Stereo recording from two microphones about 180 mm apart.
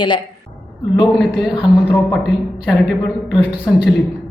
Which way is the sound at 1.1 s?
Centre (ahead or behind).